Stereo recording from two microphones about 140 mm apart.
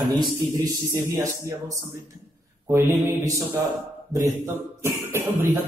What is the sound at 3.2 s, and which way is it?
A man's voice, 25° right (ahead or behind).